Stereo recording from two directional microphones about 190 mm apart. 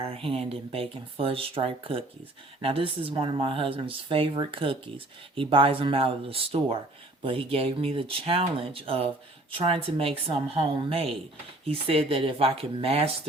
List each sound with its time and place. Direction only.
0.0 s speech: 30° right (ahead or behind)